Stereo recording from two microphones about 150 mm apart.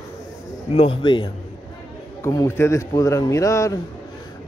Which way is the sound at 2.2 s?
20° left (ahead or behind).